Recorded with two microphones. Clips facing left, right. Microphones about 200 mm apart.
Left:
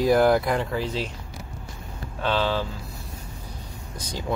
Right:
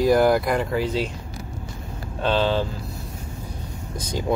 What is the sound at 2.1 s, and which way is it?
Speech, 20° right (ahead or behind).